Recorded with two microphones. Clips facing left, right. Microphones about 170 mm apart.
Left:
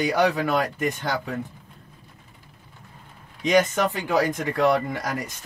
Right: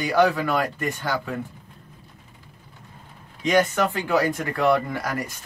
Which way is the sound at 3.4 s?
15° left (ahead or behind).